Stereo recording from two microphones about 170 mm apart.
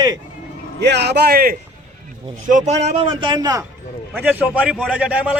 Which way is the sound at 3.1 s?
25° right (ahead or behind).